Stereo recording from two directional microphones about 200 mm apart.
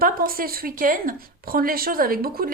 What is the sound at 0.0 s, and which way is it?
A woman's voice, 45° right (ahead or behind).